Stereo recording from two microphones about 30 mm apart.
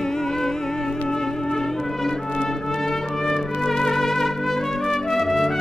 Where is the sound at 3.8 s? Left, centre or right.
Centre.